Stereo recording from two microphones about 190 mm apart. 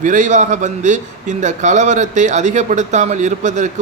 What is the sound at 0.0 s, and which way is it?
A man's voice, 45° right (ahead or behind).